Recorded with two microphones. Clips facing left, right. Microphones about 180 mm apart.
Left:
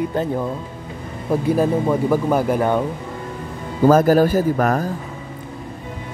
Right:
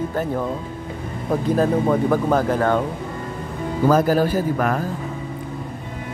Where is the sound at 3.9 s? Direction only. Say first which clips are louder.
Left 4 dB; 45° left (ahead or behind).